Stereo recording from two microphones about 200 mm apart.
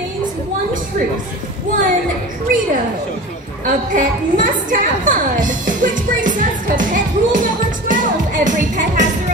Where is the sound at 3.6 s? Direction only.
40° right (ahead or behind).